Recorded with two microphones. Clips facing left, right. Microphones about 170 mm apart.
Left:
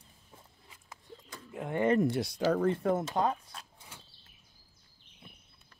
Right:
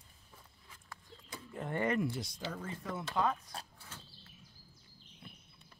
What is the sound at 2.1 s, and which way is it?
Speech, 70° left (ahead or behind).